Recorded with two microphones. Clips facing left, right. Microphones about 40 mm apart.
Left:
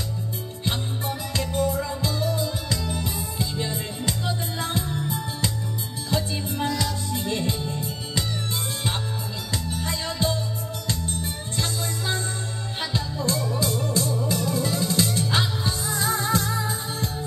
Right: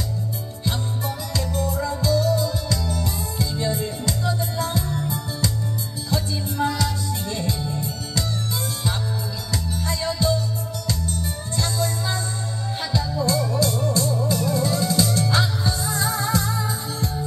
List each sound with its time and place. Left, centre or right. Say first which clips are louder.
0.7 s music: right 1 dB; left
9.5 s music: right 2 dB; left